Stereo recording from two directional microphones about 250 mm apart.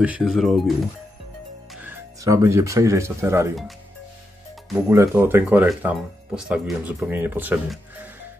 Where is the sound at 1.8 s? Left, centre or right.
Centre.